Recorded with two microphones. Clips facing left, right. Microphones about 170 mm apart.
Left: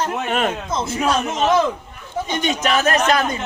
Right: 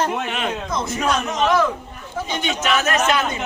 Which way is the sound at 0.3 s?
45° left (ahead or behind).